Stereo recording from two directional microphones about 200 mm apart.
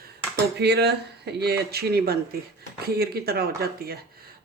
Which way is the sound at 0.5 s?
55° right (ahead or behind).